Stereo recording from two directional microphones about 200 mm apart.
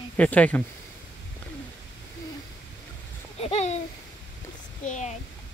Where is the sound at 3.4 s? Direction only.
30° left (ahead or behind).